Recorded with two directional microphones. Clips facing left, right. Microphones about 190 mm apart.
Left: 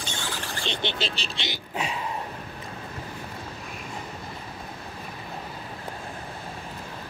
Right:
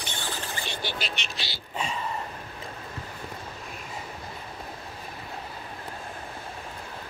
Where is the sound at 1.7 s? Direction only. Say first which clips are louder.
Even; 10° left (ahead or behind).